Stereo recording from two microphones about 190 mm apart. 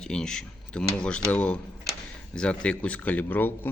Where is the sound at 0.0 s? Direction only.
5° left (ahead or behind).